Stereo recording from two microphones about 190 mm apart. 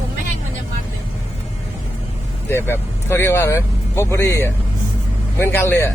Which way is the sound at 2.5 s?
10° left (ahead or behind).